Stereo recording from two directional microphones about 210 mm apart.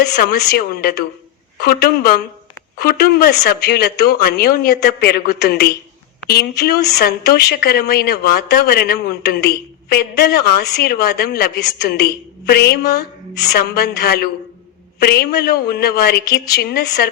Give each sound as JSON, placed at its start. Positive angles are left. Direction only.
{"t": 0.0, "sound": "speech", "side_deg": 45}